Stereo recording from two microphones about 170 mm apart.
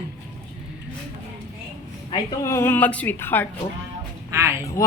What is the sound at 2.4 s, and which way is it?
A woman's voice, 15° left (ahead or behind).